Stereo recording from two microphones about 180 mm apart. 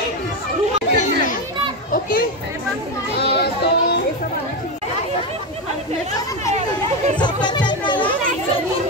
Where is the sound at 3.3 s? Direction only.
65° left (ahead or behind).